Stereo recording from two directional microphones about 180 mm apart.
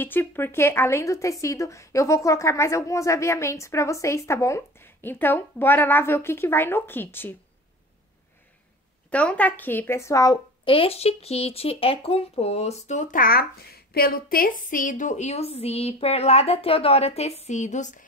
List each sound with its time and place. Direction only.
0.0 s a woman's voice: 10° left (ahead or behind)
9.1 s a woman's voice: 5° left (ahead or behind); by 18.0 s 45° left (ahead or behind)